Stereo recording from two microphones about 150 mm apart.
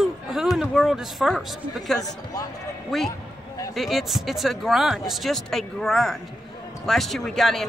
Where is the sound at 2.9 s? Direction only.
Centre (ahead or behind).